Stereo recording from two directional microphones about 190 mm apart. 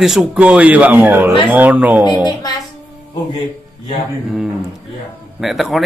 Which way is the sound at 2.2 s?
20° left (ahead or behind).